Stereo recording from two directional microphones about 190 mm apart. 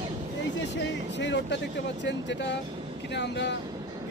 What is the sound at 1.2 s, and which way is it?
Speech, 70° left (ahead or behind).